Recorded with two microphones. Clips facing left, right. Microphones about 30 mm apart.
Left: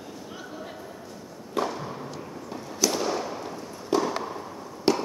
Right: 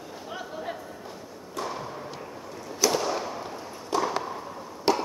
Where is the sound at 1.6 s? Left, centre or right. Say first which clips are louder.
Left 5 dB; left.